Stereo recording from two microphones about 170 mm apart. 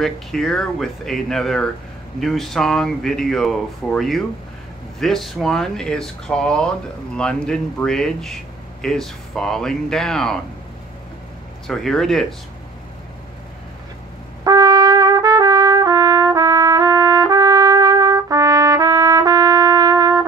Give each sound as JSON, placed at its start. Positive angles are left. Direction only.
{"t": 0.0, "sound": "speech", "side_deg": 0}
{"t": 11.6, "sound": "speech", "side_deg": 5}
{"t": 14.4, "sound": "trumpet", "side_deg": -20}